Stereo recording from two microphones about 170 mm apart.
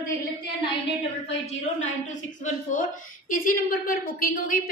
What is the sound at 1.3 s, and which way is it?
A woman's voice, 40° left (ahead or behind).